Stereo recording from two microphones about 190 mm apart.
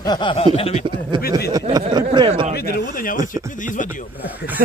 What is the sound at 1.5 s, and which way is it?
Speech, 20° right (ahead or behind).